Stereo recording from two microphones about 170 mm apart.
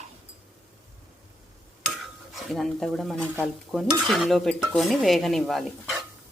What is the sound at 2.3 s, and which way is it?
A woman's voice, centre (ahead or behind).